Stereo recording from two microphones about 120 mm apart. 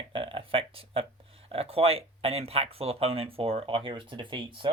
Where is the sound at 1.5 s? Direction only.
55° right (ahead or behind).